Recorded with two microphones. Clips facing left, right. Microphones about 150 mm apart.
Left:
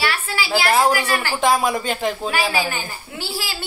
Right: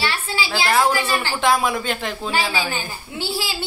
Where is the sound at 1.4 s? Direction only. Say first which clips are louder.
Left 1 dB; centre (ahead or behind).